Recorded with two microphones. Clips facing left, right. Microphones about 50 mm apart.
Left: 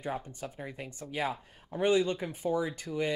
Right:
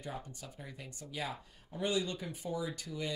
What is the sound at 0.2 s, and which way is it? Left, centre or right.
Speech, left.